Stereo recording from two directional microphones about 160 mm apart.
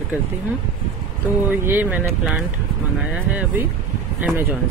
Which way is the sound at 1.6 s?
10° right (ahead or behind).